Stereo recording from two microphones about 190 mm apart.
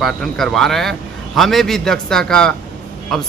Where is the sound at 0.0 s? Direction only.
Centre (ahead or behind).